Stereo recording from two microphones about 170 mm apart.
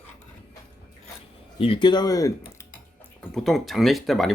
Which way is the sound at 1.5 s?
35° left (ahead or behind).